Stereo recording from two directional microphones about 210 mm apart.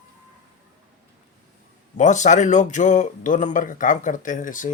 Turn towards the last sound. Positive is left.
turn(degrees=40)  # may be behind; listen again after turning